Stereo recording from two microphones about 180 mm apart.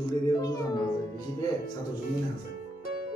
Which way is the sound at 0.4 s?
20° left (ahead or behind).